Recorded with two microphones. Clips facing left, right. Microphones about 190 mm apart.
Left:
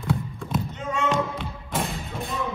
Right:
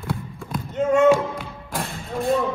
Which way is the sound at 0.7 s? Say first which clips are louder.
Right 11 dB; 45° right (ahead or behind).